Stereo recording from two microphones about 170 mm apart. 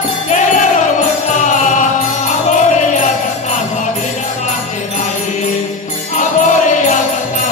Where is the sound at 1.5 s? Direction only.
45° left (ahead or behind).